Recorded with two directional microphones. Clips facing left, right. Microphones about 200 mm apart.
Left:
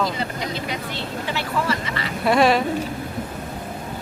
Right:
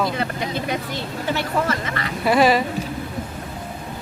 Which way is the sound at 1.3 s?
50° right (ahead or behind).